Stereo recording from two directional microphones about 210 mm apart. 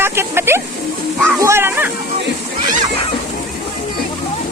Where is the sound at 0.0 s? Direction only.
10° right (ahead or behind).